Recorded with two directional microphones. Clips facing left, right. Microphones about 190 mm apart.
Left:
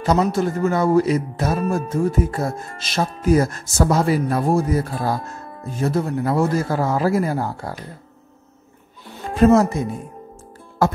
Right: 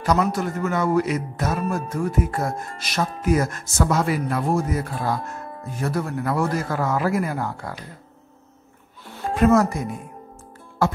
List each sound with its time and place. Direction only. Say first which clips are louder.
0.0 s a man's voice: left 3 dB; 25° left (ahead or behind)
9.3 s a man's voice: left 3 dB; 30° left (ahead or behind)
10.8 s music: left 3 dB; 40° left (ahead or behind)